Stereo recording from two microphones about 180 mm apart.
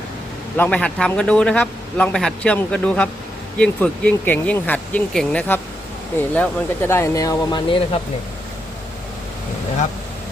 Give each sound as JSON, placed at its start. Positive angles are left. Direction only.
{"t": 0.5, "sound": "a man's voice", "side_deg": 10}